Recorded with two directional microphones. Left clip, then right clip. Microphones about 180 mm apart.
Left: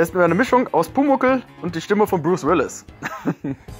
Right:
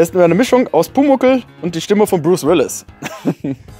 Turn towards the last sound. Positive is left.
turn(degrees=-50)  # may be behind; listen again after turning